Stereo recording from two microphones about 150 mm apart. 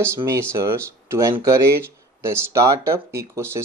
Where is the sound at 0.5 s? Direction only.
20° right (ahead or behind).